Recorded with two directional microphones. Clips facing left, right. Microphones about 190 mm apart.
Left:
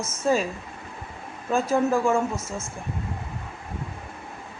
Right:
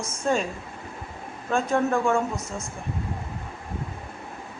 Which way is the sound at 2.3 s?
15° right (ahead or behind).